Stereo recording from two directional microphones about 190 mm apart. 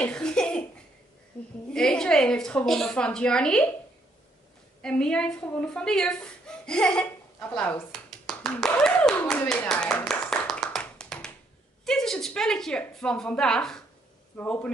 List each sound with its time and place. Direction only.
0.0 s a sound: 5° left (ahead or behind)
1.7 s a woman's voice: 5° left (ahead or behind)
4.8 s a woman's voice: 5° left (ahead or behind)
9.3 s clapping: 5° left (ahead or behind)
11.8 s a woman's voice: 5° left (ahead or behind)